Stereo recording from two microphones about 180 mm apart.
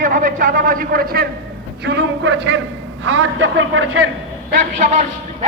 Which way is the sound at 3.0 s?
90° right.